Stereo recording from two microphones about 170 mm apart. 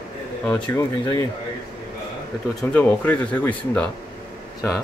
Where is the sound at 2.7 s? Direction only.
10° left (ahead or behind).